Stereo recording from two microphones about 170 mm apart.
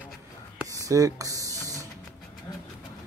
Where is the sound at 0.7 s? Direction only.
20° right (ahead or behind).